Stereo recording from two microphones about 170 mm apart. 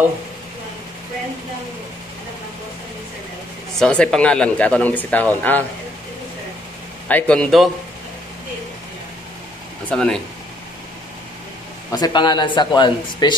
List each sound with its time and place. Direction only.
3.8 s speech: 5° left (ahead or behind)
7.1 s a man's voice: 10° left (ahead or behind)
9.8 s a man's voice: 5° left (ahead or behind)
11.9 s speech: 25° left (ahead or behind)